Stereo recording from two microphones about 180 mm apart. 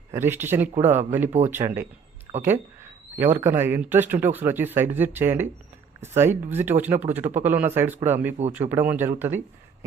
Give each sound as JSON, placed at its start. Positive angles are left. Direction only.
{"t": 0.1, "sound": "speech", "side_deg": -15}